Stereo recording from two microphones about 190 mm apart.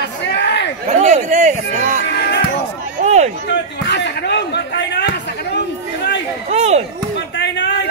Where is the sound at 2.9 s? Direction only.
35° right (ahead or behind).